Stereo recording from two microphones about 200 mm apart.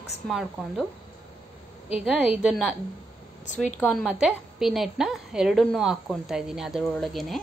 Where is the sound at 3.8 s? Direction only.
Centre (ahead or behind).